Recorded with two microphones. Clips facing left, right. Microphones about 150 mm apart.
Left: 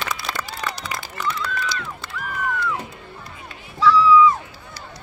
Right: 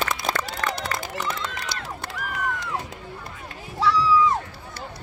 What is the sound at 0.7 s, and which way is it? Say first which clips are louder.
Run: right 2 dB; 65° right (ahead or behind).